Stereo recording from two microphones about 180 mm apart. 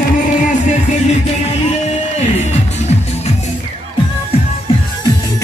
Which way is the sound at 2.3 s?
35° left (ahead or behind).